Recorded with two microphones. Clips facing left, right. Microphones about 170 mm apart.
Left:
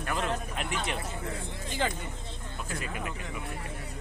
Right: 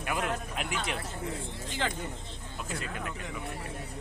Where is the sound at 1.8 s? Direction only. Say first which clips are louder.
Left 2 dB; 10° left (ahead or behind).